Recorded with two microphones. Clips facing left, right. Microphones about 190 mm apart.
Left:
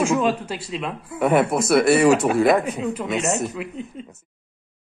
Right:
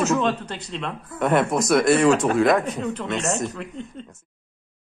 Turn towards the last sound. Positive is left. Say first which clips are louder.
# left 2 dB
turn(degrees=5)  # may be behind; listen again after turning